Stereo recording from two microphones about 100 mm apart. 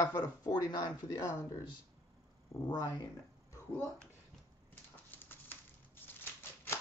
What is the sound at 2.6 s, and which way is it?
Speech, 40° left (ahead or behind).